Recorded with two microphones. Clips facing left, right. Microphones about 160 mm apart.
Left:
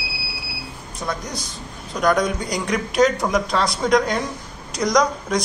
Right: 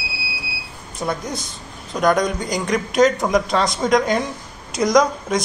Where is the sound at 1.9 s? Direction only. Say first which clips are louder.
Right 1 dB; centre (ahead or behind).